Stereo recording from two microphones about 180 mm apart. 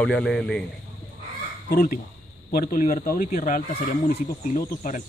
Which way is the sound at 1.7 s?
50° left (ahead or behind).